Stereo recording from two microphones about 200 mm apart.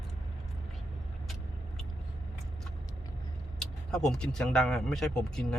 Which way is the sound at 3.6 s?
Centre (ahead or behind).